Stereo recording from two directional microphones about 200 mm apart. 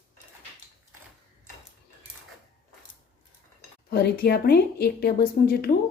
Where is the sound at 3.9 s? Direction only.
55° left (ahead or behind).